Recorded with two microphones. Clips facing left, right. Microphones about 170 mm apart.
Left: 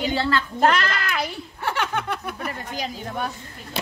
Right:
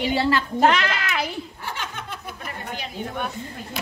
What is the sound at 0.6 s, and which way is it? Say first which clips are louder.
Speech: even; centre (ahead or behind).